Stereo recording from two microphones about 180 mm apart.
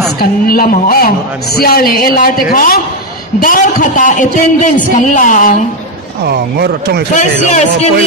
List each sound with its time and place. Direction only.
0.2 s a woman's voice: 55° left (ahead or behind)
6.2 s speech: 60° right (ahead or behind)
7.2 s a man's voice: 40° left (ahead or behind)